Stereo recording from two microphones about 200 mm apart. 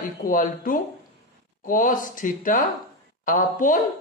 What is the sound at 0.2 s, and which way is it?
Speech, 45° left (ahead or behind).